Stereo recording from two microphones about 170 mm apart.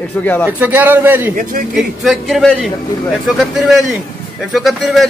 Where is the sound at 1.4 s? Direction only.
50° right (ahead or behind).